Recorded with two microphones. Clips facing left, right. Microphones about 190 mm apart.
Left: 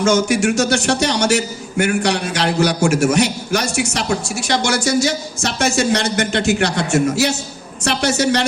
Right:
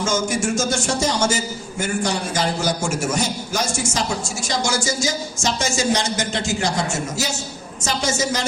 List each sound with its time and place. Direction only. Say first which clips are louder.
0.0 s a man's voice: left 6 dB; 70° left (ahead or behind)